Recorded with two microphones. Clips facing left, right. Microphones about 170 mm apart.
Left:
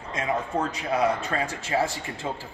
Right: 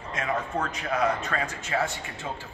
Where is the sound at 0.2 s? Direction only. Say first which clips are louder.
Left 2 dB; 20° left (ahead or behind).